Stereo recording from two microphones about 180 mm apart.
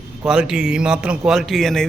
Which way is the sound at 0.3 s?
5° right (ahead or behind).